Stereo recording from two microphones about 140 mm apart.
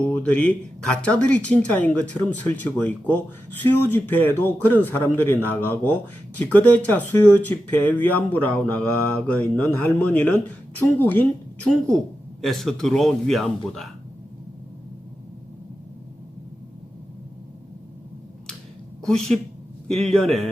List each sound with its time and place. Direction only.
0.0 s speech: 10° left (ahead or behind)
19.0 s speech: 5° left (ahead or behind)